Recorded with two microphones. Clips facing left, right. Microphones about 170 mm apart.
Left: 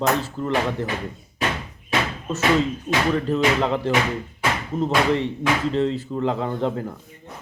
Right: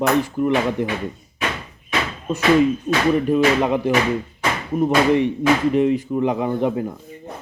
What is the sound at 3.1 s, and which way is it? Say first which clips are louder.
Speech: right 4 dB; 15° right (ahead or behind).